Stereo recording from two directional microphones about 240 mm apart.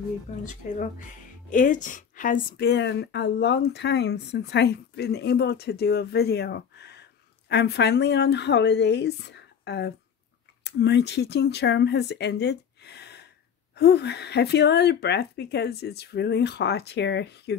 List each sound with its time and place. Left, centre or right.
0.4 s a woman's voice: left